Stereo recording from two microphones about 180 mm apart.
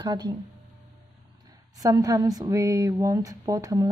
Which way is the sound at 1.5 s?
20° right (ahead or behind).